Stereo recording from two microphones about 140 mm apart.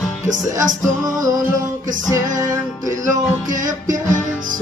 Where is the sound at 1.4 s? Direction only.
70° right (ahead or behind).